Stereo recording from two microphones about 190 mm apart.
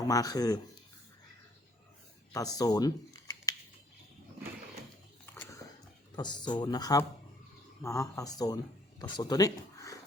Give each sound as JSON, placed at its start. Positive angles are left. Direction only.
{"t": 0.0, "sound": "speech", "side_deg": 20}
{"t": 2.3, "sound": "speech", "side_deg": 20}
{"t": 5.2, "sound": "a sound", "side_deg": 10}
{"t": 6.1, "sound": "speech", "side_deg": 20}